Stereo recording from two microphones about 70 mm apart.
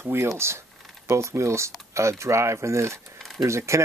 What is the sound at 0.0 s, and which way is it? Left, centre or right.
Speech, right.